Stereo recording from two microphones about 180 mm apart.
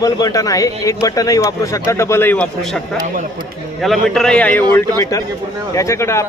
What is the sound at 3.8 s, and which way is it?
A man's voice, centre (ahead or behind).